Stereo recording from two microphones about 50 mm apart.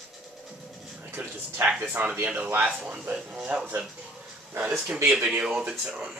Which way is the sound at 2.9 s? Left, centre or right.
Centre.